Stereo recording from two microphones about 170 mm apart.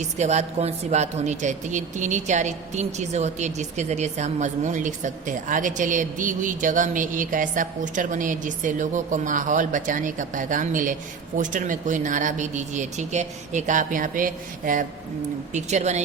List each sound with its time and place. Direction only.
0.0 s a woman's voice: 40° right (ahead or behind)